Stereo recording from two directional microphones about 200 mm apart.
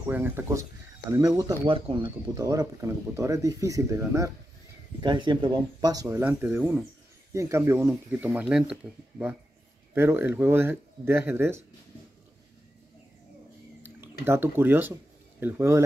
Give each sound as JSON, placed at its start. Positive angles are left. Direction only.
{"t": 0.1, "sound": "speech", "side_deg": -10}
{"t": 6.0, "sound": "speech", "side_deg": -10}
{"t": 9.9, "sound": "speech", "side_deg": -10}
{"t": 14.2, "sound": "speech", "side_deg": -10}